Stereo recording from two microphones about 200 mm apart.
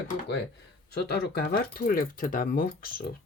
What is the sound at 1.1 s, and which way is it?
Speech, 55° left (ahead or behind).